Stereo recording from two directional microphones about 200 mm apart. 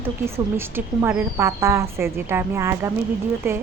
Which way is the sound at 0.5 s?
10° right (ahead or behind).